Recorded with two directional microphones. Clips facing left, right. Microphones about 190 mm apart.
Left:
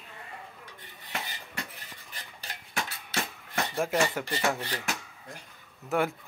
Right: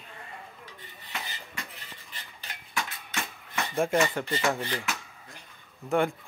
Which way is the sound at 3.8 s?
5° left (ahead or behind).